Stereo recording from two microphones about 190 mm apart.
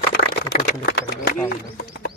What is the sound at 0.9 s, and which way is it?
Speech, 60° left (ahead or behind).